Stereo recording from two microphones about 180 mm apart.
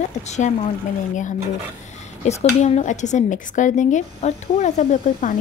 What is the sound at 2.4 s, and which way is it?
Speech, 40° left (ahead or behind).